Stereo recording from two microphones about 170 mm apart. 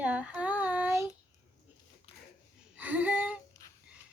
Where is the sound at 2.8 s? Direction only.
10° right (ahead or behind).